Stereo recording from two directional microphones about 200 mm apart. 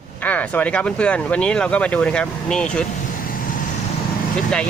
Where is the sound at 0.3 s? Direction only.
5° left (ahead or behind).